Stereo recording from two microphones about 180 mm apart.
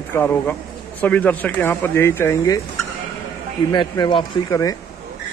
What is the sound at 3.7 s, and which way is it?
Speech, 25° left (ahead or behind).